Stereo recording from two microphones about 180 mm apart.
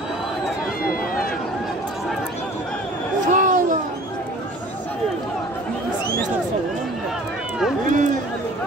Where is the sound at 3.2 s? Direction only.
45° right (ahead or behind).